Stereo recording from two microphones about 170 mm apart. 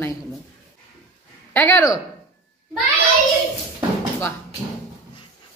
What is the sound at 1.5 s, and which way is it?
Speech, 10° left (ahead or behind).